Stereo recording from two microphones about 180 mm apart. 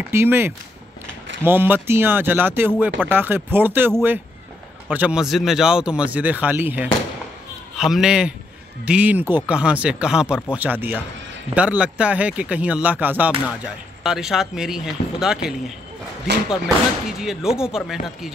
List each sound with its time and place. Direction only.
0.1 s speech: 15° right (ahead or behind)
16.3 s speech: 75° right (ahead or behind)
17.2 s speech: 5° right (ahead or behind)